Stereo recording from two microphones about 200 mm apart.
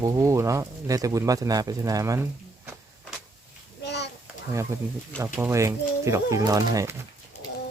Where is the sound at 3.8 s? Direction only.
60° left (ahead or behind).